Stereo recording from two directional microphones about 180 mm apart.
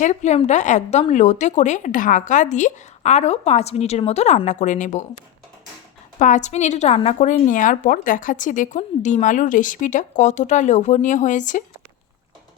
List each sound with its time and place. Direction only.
0.0 s speech: 40° left (ahead or behind)